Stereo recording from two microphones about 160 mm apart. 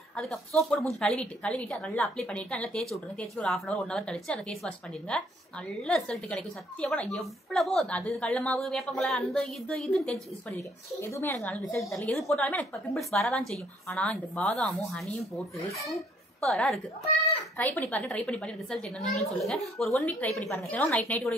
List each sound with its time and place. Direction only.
0.1 s a woman's voice: 5° left (ahead or behind)
11.0 s a woman's voice: 15° left (ahead or behind)
11.3 s a woman's voice: 5° left (ahead or behind)